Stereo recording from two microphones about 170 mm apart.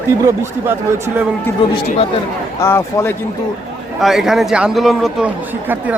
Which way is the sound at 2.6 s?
15° left (ahead or behind).